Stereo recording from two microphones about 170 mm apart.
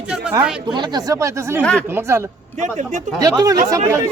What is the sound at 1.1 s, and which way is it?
Speech, 20° right (ahead or behind).